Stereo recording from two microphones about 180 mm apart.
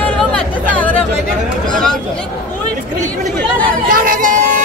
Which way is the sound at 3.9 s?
50° right (ahead or behind).